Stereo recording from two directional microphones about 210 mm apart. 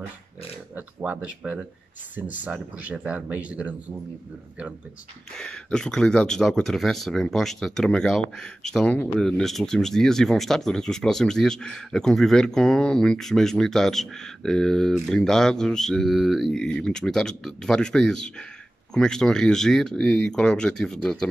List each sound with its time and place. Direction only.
0.7 s speech: 5° right (ahead or behind)
5.3 s speech: 5° left (ahead or behind)